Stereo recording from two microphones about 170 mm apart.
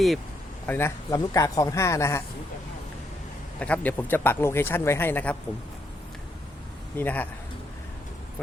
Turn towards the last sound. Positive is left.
turn(degrees=10)  # may be behind; listen again after turning